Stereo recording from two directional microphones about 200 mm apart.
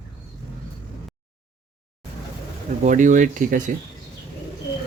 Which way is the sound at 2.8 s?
40° right (ahead or behind).